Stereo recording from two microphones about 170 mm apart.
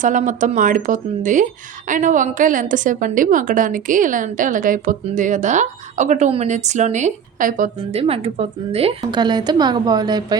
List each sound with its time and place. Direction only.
0.0 s a woman's voice: 50° right (ahead or behind)
7.9 s speech: 35° right (ahead or behind)
9.0 s a woman's voice: 25° right (ahead or behind)